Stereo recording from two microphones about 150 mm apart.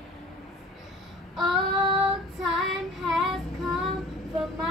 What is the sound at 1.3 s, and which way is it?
Child singing, centre (ahead or behind).